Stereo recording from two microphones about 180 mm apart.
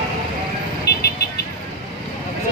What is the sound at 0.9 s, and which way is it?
Vehicle, 65° left (ahead or behind).